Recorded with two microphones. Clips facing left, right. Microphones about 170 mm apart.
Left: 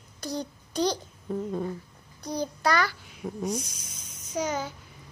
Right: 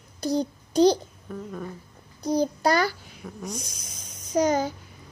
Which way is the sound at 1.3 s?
25° left (ahead or behind).